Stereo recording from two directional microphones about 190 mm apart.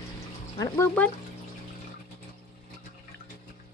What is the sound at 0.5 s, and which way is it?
Speech, 15° left (ahead or behind).